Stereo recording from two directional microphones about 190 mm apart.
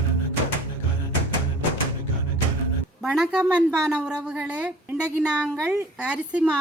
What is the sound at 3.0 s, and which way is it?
A woman's voice, centre (ahead or behind).